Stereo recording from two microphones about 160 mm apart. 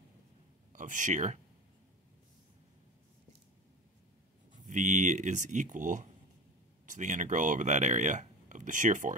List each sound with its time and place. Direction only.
0.7 s speech: 50° right (ahead or behind)
4.6 s speech: 50° right (ahead or behind)